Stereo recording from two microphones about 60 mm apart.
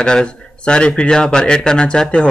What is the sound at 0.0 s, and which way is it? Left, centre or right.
A man's voice, centre.